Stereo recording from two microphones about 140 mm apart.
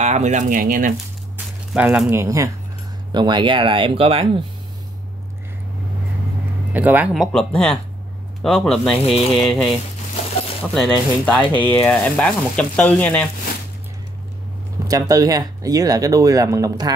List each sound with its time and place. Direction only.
0.0 s speech: 55° right (ahead or behind); by 0.9 s 80° right
1.7 s speech: 5° right (ahead or behind)
2.1 s speech: 20° right (ahead or behind); by 4.4 s 40° right (ahead or behind)
6.7 s speech: 10° right (ahead or behind)
7.3 s speech: 5° left (ahead or behind)
14.9 s speech: 25° right (ahead or behind)